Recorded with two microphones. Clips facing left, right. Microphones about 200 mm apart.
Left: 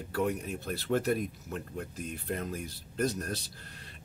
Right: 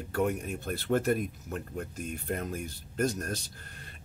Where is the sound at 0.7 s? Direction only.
50° right (ahead or behind).